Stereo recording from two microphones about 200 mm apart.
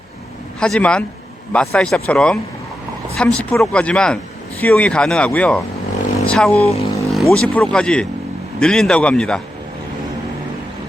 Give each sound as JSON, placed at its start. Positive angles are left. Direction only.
{"t": 0.6, "sound": "speech", "side_deg": 5}
{"t": 6.6, "sound": "speech", "side_deg": 30}
{"t": 7.1, "sound": "speech", "side_deg": 0}